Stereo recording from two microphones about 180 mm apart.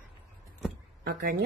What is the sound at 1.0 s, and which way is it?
Speech, 55° right (ahead or behind).